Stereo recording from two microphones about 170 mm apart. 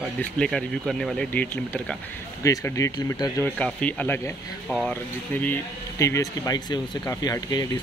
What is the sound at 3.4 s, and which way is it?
Speech, 10° left (ahead or behind).